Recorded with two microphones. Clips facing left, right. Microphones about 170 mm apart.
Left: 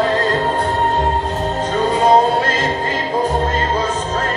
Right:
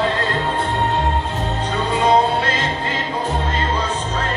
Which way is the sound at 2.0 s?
45° left (ahead or behind).